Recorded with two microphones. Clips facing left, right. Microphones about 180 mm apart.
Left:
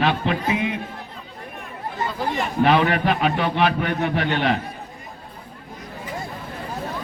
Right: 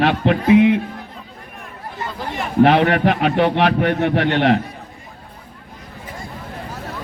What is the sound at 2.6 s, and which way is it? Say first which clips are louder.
A man's voice: right 2 dB; 70° right (ahead or behind).